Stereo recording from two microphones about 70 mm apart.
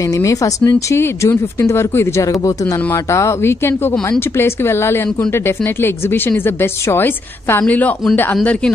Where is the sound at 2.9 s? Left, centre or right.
Left.